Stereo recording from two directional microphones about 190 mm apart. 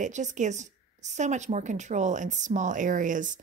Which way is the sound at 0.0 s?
40° right (ahead or behind).